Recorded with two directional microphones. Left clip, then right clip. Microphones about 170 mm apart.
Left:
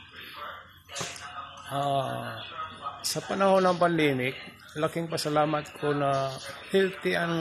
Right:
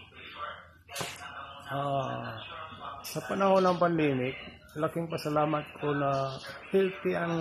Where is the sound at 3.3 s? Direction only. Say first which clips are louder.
Left 2 dB; 10° left (ahead or behind).